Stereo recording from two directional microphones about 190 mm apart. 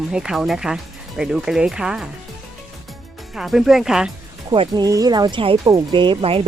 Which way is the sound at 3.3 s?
Centre (ahead or behind).